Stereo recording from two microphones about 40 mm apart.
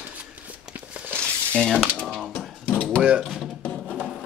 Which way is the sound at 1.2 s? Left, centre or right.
Left.